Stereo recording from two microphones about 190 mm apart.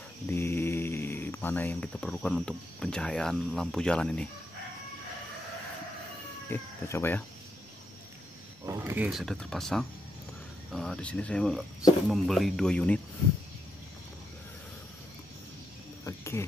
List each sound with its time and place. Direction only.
0.3 s speech: 10° left (ahead or behind)
6.5 s speech: 10° left (ahead or behind)
8.6 s speech: 15° right (ahead or behind); by 13.0 s 5° left (ahead or behind)
16.0 s cricket: 15° left (ahead or behind)